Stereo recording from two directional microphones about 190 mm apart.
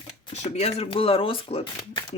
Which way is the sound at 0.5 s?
35° left (ahead or behind).